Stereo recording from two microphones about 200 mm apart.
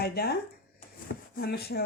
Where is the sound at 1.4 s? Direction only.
55° left (ahead or behind).